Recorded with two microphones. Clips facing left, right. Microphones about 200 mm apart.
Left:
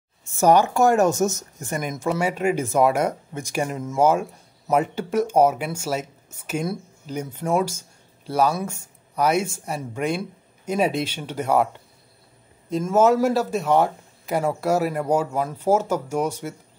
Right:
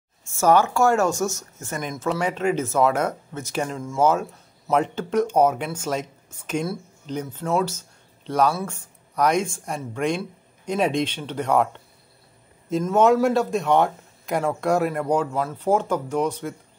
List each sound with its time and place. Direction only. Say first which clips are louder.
0.3 s speech: left 1 dB; 15° left (ahead or behind)
12.8 s speech: even; 5° left (ahead or behind)